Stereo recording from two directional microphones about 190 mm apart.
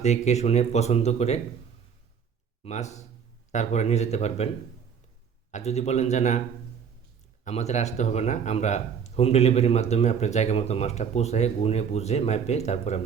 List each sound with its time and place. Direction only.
0.0 s speech: 35° left (ahead or behind)
2.6 s speech: 40° left (ahead or behind)
5.5 s speech: 35° left (ahead or behind)
7.4 s speech: 35° left (ahead or behind)